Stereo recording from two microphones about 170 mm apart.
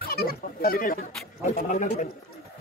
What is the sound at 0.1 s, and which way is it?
A man's voice, 60° left (ahead or behind).